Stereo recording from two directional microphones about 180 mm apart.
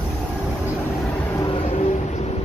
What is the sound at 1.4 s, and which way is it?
Vehicle, 30° left (ahead or behind).